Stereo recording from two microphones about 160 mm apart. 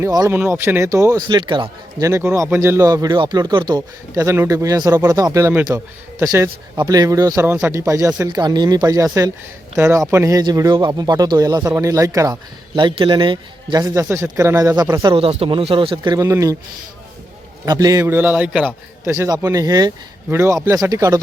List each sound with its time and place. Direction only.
0.0 s speech: 20° right (ahead or behind)
2.0 s speech: 15° right (ahead or behind)
17.7 s a man's voice: 25° right (ahead or behind)
19.1 s a man's voice: 20° right (ahead or behind)